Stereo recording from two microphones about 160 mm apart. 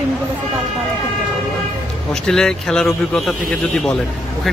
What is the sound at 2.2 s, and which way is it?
Speech, 5° left (ahead or behind).